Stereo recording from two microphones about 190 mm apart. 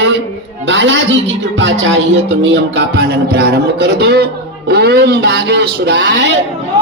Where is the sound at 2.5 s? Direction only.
65° right (ahead or behind).